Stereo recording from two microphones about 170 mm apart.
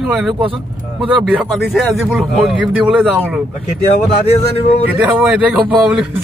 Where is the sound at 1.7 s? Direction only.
5° right (ahead or behind).